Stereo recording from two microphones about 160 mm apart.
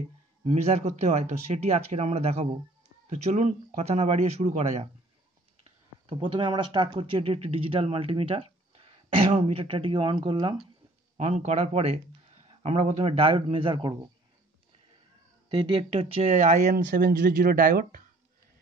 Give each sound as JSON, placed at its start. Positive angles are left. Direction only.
{"t": 0.5, "sound": "speech", "side_deg": -40}
{"t": 6.0, "sound": "speech", "side_deg": -30}
{"t": 11.1, "sound": "speech", "side_deg": -45}
{"t": 15.5, "sound": "speech", "side_deg": -30}
{"t": 16.3, "sound": "speech", "side_deg": -60}